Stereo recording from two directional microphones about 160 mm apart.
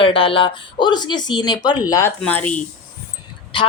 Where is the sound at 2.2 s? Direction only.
10° left (ahead or behind).